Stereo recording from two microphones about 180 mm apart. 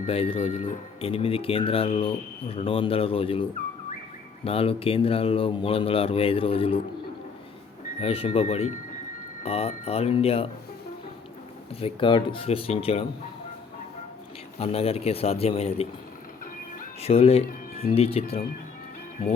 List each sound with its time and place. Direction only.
0.1 s speech: 30° left (ahead or behind)
4.4 s speech: 30° left (ahead or behind)
8.0 s speech: 30° left (ahead or behind)
11.8 s speech: 30° left (ahead or behind)
14.6 s speech: 35° left (ahead or behind)
17.0 s speech: 35° left (ahead or behind)